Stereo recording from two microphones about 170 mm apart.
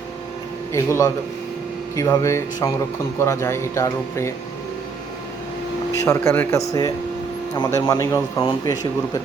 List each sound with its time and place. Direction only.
0.7 s speech: 15° left (ahead or behind)
6.1 s speech: 15° left (ahead or behind)